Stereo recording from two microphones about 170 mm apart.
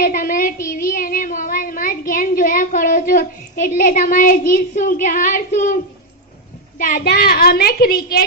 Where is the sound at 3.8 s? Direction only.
50° left (ahead or behind).